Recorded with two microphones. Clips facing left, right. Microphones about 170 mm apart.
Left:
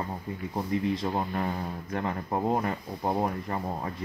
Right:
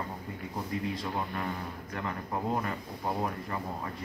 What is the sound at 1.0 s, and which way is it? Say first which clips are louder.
Speech: left 5 dB; 40° left (ahead or behind).